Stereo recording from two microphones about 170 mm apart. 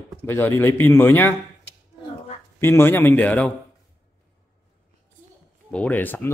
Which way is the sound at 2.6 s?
15° left (ahead or behind).